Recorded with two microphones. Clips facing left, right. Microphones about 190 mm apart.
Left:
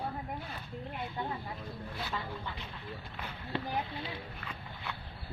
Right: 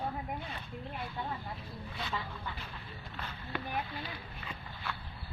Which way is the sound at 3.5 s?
25° left (ahead or behind).